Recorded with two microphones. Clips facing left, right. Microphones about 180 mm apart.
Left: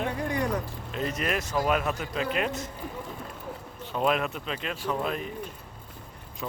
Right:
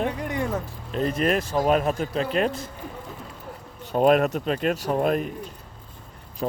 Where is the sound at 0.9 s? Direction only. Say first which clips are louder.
Right 7 dB; 35° right (ahead or behind).